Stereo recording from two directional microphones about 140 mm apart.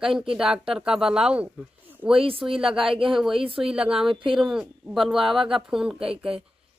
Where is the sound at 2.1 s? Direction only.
40° right (ahead or behind).